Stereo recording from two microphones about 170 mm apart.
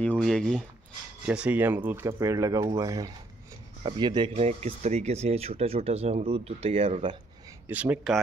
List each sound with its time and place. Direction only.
0.0 s speech: 5° left (ahead or behind)
1.2 s speech: 5° right (ahead or behind); by 4.3 s 30° right (ahead or behind)
4.4 s speech: 40° right (ahead or behind)
7.6 s speech: 10° right (ahead or behind)